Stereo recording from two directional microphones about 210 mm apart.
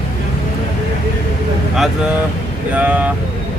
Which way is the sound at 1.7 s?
Centre (ahead or behind).